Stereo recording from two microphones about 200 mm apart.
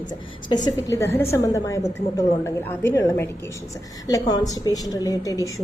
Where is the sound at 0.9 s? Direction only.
15° left (ahead or behind).